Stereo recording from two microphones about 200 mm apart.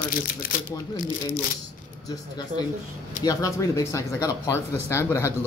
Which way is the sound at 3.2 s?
20° left (ahead or behind).